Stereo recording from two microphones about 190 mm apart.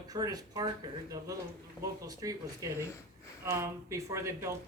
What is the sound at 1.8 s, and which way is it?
Speech, 15° right (ahead or behind).